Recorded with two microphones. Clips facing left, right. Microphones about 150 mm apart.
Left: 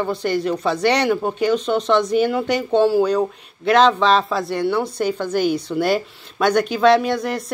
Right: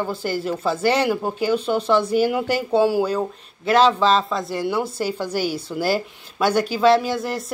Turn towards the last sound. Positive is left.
turn(degrees=0)  # may be behind; listen again after turning